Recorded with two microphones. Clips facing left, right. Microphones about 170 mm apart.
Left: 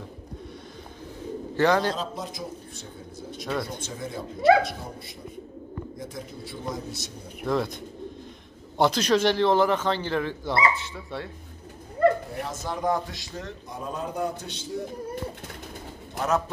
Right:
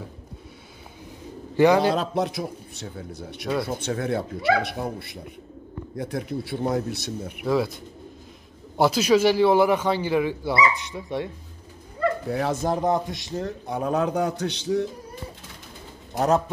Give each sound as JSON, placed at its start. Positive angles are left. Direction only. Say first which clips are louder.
{"t": 1.6, "sound": "a man's voice", "louder": "right 5 dB", "side_deg": -10}
{"t": 2.0, "sound": "a man's voice", "louder": "right 8 dB", "side_deg": -70}
{"t": 7.4, "sound": "speech", "louder": "right 3 dB", "side_deg": -5}
{"t": 8.7, "sound": "a man's voice", "louder": "right 3 dB", "side_deg": -5}
{"t": 12.3, "sound": "a man's voice", "louder": "right 9 dB", "side_deg": -75}
{"t": 12.8, "sound": "a man's voice", "louder": "right 3 dB", "side_deg": -20}
{"t": 13.7, "sound": "a man's voice", "louder": "right 10 dB", "side_deg": -70}
{"t": 16.2, "sound": "speech", "louder": "right 4 dB", "side_deg": -30}